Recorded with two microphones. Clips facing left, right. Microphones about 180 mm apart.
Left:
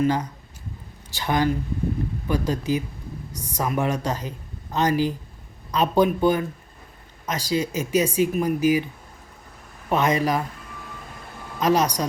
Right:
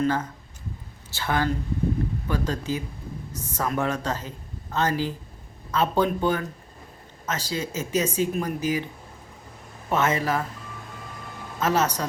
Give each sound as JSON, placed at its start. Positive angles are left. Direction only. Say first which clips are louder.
{"t": 0.0, "sound": "speech", "louder": "left 2 dB", "side_deg": 15}
{"t": 9.9, "sound": "speech", "louder": "left 2 dB", "side_deg": 15}
{"t": 11.6, "sound": "speech", "louder": "left 3 dB", "side_deg": 15}